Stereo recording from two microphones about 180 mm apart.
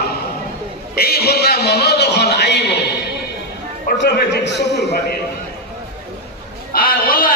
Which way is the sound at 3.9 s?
65° left (ahead or behind).